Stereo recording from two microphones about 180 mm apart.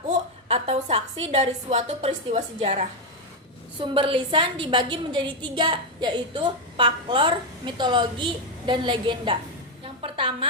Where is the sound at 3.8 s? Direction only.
30° right (ahead or behind).